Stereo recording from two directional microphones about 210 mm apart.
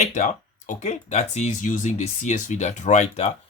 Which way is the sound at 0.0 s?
35° left (ahead or behind).